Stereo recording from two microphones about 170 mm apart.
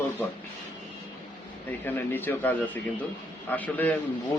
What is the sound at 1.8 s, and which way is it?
Speech, 10° left (ahead or behind).